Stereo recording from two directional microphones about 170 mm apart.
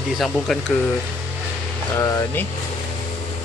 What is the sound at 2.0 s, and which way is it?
Speech, 20° left (ahead or behind).